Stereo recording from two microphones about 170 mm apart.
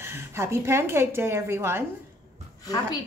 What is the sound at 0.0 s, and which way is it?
A woman's voice, 15° right (ahead or behind).